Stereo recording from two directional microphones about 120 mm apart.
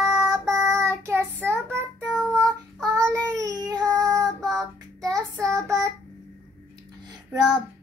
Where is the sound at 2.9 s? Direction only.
25° right (ahead or behind).